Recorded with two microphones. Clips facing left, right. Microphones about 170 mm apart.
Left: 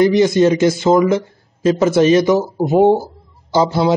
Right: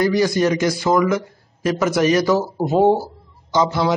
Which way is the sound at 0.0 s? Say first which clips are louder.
Left 5 dB; 20° left (ahead or behind).